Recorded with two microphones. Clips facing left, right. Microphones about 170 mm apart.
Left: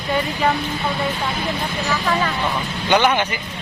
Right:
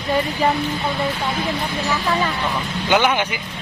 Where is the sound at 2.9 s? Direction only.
10° right (ahead or behind).